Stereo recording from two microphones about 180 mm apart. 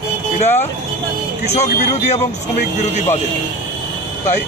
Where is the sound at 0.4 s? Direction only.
35° left (ahead or behind).